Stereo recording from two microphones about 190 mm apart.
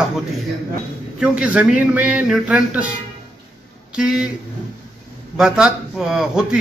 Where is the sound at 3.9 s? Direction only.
5° right (ahead or behind).